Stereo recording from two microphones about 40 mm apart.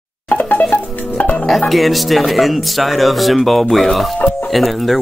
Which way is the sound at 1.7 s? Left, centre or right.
Centre.